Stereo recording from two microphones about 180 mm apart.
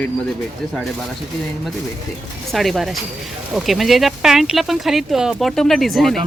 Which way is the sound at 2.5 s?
Centre (ahead or behind).